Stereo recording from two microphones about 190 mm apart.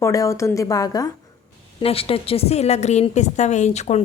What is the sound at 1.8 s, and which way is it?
A woman's voice, 30° left (ahead or behind).